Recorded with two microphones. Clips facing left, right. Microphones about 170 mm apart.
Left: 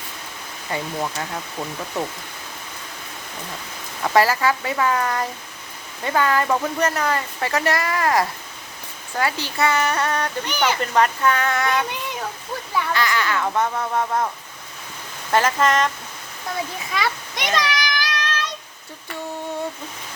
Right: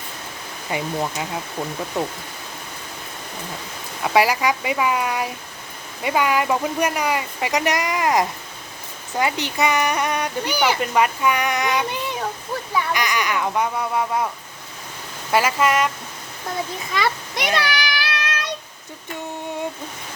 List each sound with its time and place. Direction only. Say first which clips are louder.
0.7 s speech: right 2 dB; 15° right (ahead or behind)
4.0 s speech: even; 10° right (ahead or behind)
12.9 s speech: left 3 dB; 15° right (ahead or behind)
15.3 s speech: even; 10° right (ahead or behind)
16.9 s a sound: right 3 dB; centre (ahead or behind)